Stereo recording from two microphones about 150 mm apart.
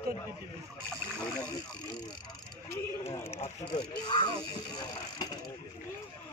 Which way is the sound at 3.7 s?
30° left (ahead or behind).